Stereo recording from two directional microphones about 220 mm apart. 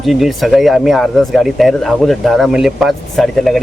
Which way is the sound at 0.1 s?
Centre (ahead or behind).